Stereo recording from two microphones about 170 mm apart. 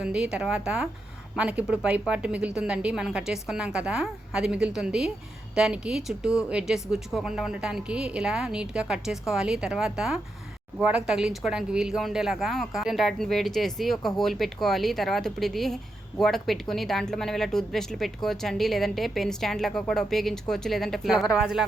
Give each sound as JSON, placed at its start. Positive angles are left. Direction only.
{"t": 0.0, "sound": "a woman's voice", "side_deg": -5}